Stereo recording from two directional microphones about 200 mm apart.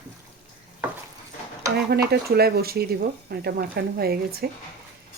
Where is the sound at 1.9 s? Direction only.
55° right (ahead or behind).